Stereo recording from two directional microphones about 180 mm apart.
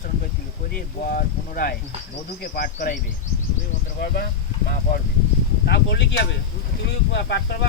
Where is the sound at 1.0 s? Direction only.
55° left (ahead or behind).